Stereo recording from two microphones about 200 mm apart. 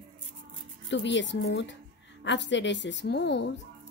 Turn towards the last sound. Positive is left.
turn(degrees=60)  # may be behind; listen again after turning